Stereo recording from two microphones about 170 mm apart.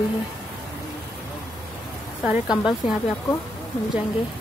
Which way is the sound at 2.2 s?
5° right (ahead or behind).